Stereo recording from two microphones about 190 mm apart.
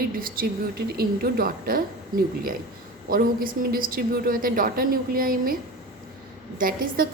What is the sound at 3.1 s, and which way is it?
A woman's voice, 50° right (ahead or behind).